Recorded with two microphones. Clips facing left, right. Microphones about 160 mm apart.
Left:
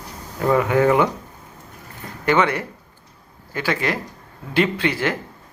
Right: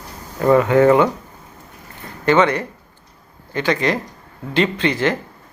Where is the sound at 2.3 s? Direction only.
10° left (ahead or behind).